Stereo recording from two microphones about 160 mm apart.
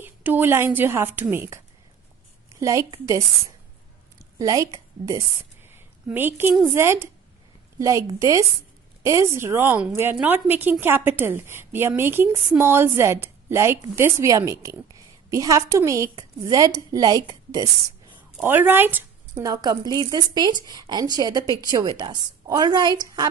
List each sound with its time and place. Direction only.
0.0 s a woman's voice: 10° right (ahead or behind)
5.6 s a sound: 15° right (ahead or behind)
6.6 s a woman's voice: 15° right (ahead or behind)
18.4 s a woman's voice: 15° right (ahead or behind)